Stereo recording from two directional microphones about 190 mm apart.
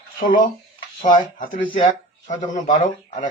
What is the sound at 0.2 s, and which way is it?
Speech, 45° left (ahead or behind).